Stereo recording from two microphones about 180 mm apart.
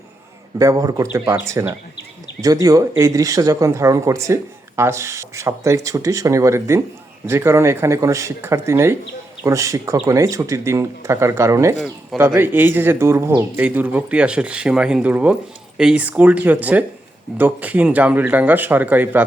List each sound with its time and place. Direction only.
0.6 s speech: 20° right (ahead or behind)